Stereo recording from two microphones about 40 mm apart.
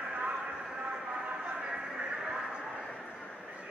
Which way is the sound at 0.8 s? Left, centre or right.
Right.